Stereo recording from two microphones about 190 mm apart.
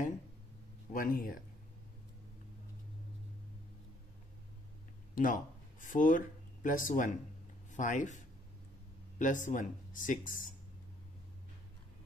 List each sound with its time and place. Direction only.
0.9 s speech: 50° left (ahead or behind)
5.1 s speech: 45° left (ahead or behind)
9.2 s speech: 40° left (ahead or behind)